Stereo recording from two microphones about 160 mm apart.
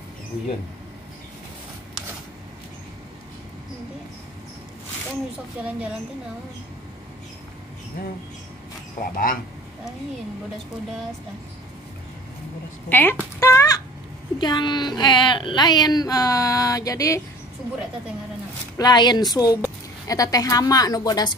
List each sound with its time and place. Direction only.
5.6 s a woman's voice: 10° right (ahead or behind)
9.1 s speech: 60° left (ahead or behind)
12.9 s a sound: 15° left (ahead or behind)
14.4 s speech: 25° left (ahead or behind)
18.8 s speech: 25° left (ahead or behind)